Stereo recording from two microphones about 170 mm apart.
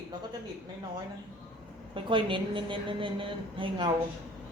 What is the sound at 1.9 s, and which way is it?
A woman's voice, 30° right (ahead or behind).